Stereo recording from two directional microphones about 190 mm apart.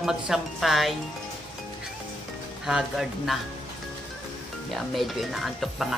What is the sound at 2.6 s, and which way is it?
Speech, centre (ahead or behind).